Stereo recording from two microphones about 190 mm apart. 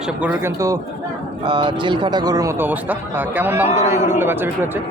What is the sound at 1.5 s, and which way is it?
Speech, 25° right (ahead or behind).